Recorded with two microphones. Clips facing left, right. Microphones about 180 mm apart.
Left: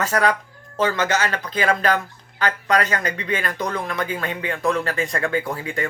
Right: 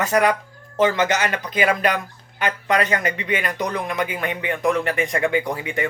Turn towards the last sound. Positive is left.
turn(degrees=-20)  # may be behind; listen again after turning